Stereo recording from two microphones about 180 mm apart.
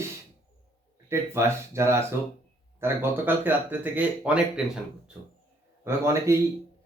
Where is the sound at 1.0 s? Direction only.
15° right (ahead or behind).